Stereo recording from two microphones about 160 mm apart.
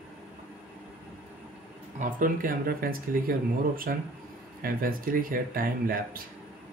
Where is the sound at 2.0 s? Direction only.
60° right (ahead or behind).